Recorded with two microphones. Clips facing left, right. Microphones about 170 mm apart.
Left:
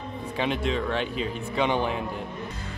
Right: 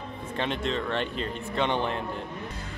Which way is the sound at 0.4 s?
5° left (ahead or behind).